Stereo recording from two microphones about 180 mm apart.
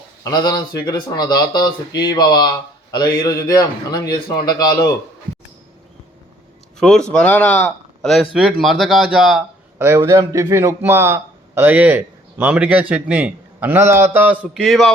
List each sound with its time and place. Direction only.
0.3 s speech: 20° left (ahead or behind)
6.7 s a man's voice: 5° left (ahead or behind)